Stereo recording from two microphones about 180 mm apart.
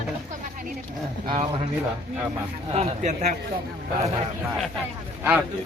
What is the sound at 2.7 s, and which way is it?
Speech, 40° right (ahead or behind).